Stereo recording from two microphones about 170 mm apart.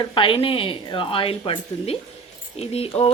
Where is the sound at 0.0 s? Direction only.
30° left (ahead or behind).